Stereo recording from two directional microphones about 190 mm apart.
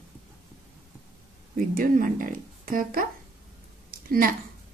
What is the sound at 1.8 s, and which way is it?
A woman's voice, 45° right (ahead or behind).